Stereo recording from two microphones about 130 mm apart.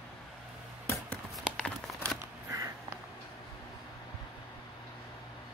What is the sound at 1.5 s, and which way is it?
Crumpling, 5° left (ahead or behind).